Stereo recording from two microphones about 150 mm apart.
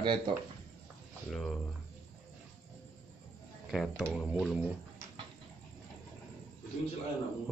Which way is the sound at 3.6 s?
5° right (ahead or behind).